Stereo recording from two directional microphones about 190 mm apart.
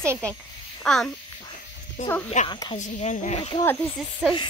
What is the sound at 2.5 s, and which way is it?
Speech, 25° left (ahead or behind).